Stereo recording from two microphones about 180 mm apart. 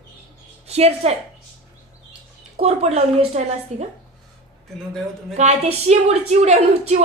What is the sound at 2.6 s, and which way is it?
A woman's voice, 35° right (ahead or behind).